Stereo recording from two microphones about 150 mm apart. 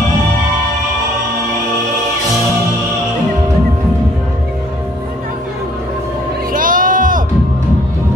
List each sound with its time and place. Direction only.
6.5 s music: 65° right (ahead or behind)